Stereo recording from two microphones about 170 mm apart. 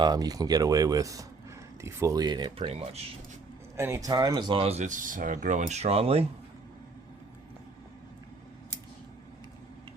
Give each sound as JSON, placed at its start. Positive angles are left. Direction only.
{"t": 0.0, "sound": "speech", "side_deg": -25}
{"t": 3.8, "sound": "speech", "side_deg": -15}